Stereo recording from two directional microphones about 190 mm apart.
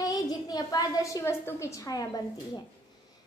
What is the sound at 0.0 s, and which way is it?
A woman's voice, 20° left (ahead or behind).